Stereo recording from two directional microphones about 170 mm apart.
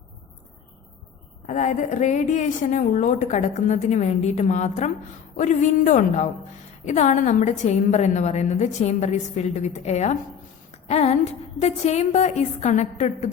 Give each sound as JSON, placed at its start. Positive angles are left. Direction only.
{"t": 1.5, "sound": "a woman's voice", "side_deg": 45}